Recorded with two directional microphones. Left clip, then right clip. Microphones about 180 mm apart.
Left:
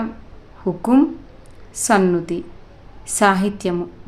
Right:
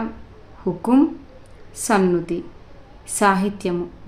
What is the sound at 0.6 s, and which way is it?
A woman's voice, 20° left (ahead or behind).